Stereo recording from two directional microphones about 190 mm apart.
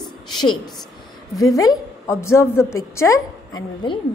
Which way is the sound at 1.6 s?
15° left (ahead or behind).